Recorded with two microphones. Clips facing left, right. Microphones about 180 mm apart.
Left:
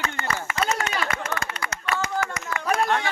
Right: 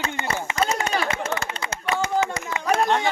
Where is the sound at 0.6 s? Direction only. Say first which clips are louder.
Right 3 dB; 30° right (ahead or behind).